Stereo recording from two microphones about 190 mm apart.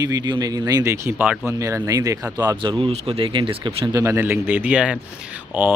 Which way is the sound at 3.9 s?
15° right (ahead or behind).